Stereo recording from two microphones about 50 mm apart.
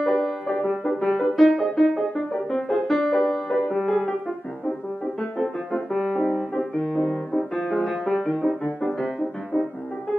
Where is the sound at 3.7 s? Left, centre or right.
Centre.